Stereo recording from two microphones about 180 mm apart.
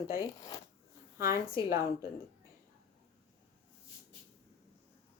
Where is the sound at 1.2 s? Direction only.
15° right (ahead or behind).